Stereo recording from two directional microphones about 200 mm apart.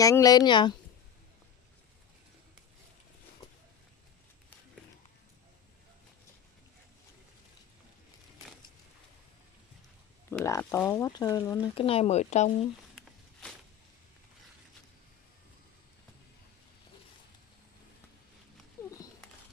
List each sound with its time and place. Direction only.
0.0 s speech: 15° left (ahead or behind)
10.4 s speech: 15° left (ahead or behind)
11.7 s speech: 30° left (ahead or behind)
18.8 s a sound: 15° left (ahead or behind)